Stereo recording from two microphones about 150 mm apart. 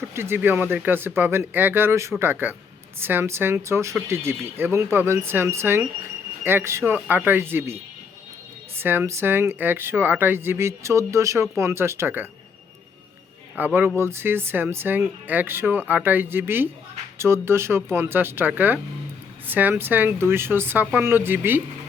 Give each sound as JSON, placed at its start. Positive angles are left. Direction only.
{"t": 0.1, "sound": "speech", "side_deg": -15}
{"t": 13.6, "sound": "speech", "side_deg": -15}